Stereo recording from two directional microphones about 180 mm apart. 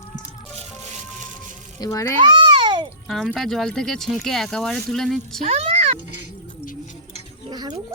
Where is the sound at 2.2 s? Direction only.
25° right (ahead or behind).